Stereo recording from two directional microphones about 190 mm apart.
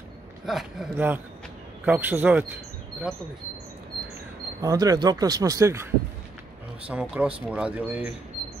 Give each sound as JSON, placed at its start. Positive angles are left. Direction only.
{"t": 0.5, "sound": "a man's voice", "side_deg": 0}
{"t": 4.6, "sound": "speech", "side_deg": -20}
{"t": 6.9, "sound": "speech", "side_deg": -5}